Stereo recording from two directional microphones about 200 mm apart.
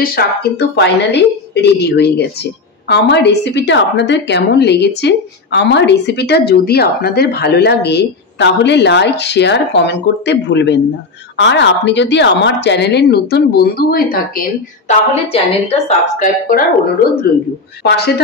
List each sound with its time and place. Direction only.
0.0 s a woman's voice: 50° left (ahead or behind)
14.9 s a woman's voice: 30° left (ahead or behind)
17.8 s a woman's voice: 55° left (ahead or behind)